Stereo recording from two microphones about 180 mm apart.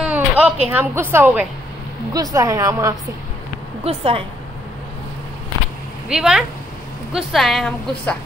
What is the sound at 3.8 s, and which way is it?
Speech, 30° right (ahead or behind).